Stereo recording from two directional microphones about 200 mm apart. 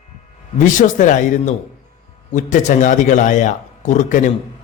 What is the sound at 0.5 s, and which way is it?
A man's voice, 40° left (ahead or behind).